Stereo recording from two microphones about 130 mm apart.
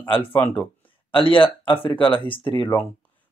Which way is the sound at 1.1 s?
40° left (ahead or behind).